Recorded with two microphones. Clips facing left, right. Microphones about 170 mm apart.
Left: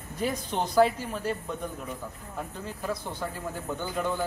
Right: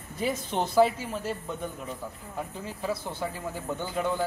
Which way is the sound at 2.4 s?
5° right (ahead or behind).